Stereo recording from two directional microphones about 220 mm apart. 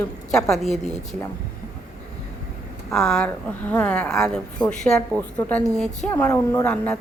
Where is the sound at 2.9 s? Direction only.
Centre (ahead or behind).